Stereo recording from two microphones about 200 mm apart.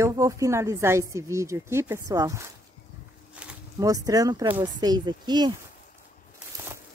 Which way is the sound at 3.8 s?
15° right (ahead or behind).